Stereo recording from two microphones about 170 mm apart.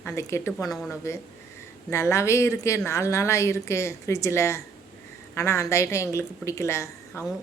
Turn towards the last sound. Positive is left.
turn(degrees=15)  # may be behind; listen again after turning